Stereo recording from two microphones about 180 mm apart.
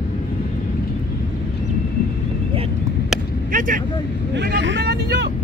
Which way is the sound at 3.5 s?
50° right (ahead or behind).